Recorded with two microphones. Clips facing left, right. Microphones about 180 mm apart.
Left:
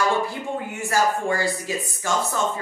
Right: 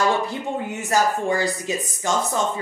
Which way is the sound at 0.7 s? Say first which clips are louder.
Right 1 dB; 20° right (ahead or behind).